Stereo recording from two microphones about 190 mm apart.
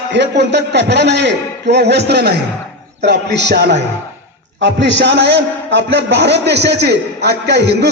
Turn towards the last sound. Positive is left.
turn(degrees=-65)  # may be behind; listen again after turning